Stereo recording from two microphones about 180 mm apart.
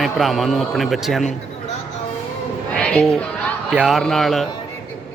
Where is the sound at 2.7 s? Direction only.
5° left (ahead or behind).